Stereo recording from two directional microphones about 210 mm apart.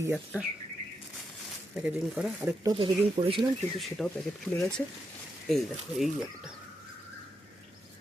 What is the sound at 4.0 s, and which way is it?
Speech, 5° left (ahead or behind).